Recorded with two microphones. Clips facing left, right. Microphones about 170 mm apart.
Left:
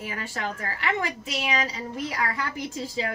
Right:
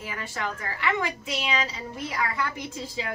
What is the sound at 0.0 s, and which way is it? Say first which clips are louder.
Speech: left 1 dB; 35° left (ahead or behind).